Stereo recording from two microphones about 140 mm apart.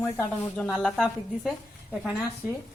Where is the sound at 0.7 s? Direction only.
Centre (ahead or behind).